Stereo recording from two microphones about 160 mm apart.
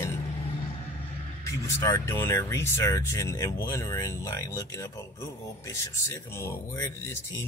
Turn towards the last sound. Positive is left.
turn(degrees=15)  # may be behind; listen again after turning